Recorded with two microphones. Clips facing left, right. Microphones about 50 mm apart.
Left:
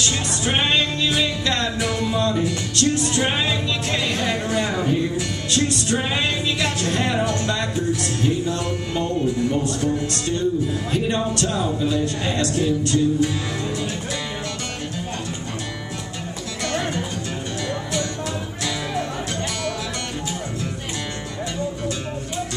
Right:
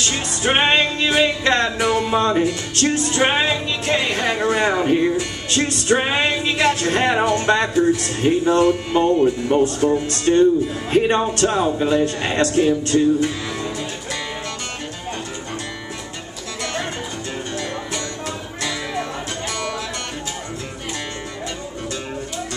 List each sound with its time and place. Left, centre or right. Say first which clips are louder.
0.1 s music: right 3 dB; right
1.8 s music: right 4 dB; right